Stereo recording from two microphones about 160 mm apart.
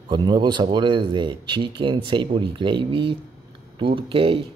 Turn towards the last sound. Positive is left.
turn(degrees=-35)  # may be behind; listen again after turning